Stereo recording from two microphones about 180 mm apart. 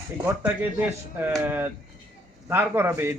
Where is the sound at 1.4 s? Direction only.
10° right (ahead or behind).